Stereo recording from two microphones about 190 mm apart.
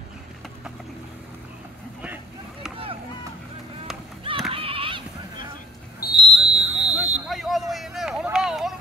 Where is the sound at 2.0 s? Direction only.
10° right (ahead or behind).